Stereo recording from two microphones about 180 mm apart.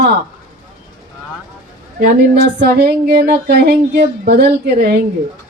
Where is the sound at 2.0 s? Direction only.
65° right (ahead or behind).